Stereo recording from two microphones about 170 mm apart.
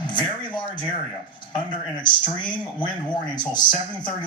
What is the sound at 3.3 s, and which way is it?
Speech, 25° left (ahead or behind).